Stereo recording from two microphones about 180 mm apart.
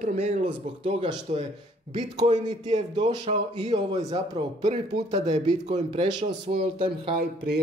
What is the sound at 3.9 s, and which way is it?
Speech, 20° right (ahead or behind).